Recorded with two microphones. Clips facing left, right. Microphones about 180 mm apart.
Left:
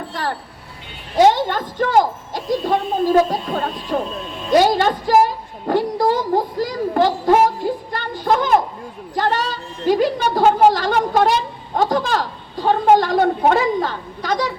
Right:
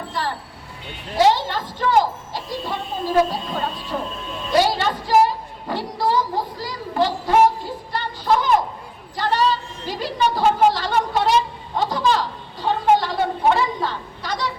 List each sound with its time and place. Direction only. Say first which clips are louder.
0.1 s a sound: left 1 dB; 50° left (ahead or behind)
1.3 s a woman's voice: left 2 dB; 50° left (ahead or behind)
7.9 s music: right 1 dB; 50° left (ahead or behind)
9.1 s a woman's voice: even; 50° left (ahead or behind)